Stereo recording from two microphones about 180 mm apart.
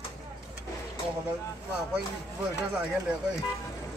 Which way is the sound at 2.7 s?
5° right (ahead or behind).